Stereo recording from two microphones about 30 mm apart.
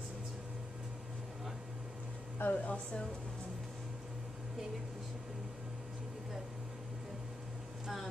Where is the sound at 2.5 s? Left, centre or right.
Left.